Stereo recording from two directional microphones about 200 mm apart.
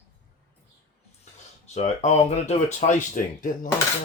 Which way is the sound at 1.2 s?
35° left (ahead or behind).